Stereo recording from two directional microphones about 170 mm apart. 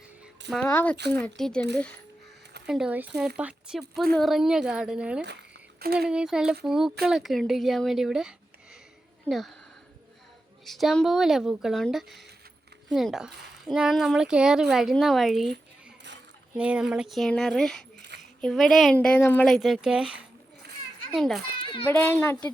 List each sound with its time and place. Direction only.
0.5 s a woman's voice: 10° left (ahead or behind)
2.6 s a woman's voice: 5° right (ahead or behind)
5.8 s speech: 65° right (ahead or behind)
6.1 s a woman's voice: 5° right (ahead or behind)
9.3 s speech: 10° left (ahead or behind)
10.7 s a woman's voice: centre (ahead or behind)
16.6 s a woman's voice: 5° right (ahead or behind); by 19.5 s 10° left (ahead or behind)
19.5 s a woman's voice: centre (ahead or behind)
21.8 s speech: 15° left (ahead or behind)